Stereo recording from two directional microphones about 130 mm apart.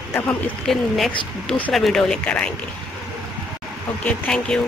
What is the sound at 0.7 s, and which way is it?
A woman's voice, centre (ahead or behind).